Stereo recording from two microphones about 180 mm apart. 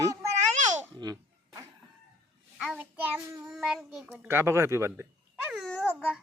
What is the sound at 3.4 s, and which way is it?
A child's voice, 5° right (ahead or behind).